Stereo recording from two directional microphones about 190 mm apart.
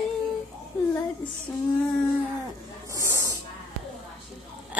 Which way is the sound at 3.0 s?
15° right (ahead or behind).